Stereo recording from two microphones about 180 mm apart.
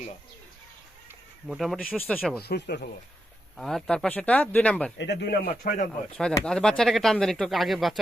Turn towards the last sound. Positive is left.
turn(degrees=0)  # may be behind; listen again after turning